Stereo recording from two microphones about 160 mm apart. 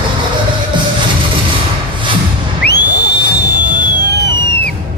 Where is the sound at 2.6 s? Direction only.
90° left.